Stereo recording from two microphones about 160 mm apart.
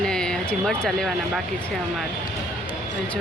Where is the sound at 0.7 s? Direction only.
Centre (ahead or behind).